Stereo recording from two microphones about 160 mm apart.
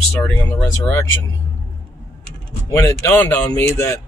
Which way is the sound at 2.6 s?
15° left (ahead or behind).